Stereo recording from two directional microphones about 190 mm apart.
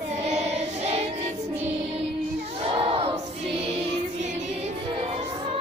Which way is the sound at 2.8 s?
30° right (ahead or behind).